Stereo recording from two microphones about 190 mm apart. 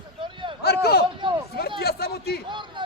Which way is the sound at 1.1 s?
25° right (ahead or behind).